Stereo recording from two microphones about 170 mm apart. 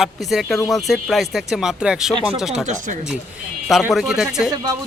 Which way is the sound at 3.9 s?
5° right (ahead or behind).